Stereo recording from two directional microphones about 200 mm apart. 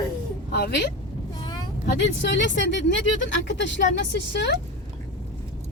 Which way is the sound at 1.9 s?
60° left (ahead or behind).